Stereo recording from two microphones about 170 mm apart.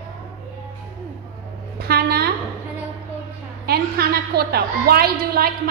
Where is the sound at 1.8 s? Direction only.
65° right (ahead or behind).